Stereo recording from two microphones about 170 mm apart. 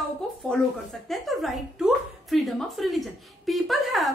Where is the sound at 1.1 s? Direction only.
Centre (ahead or behind).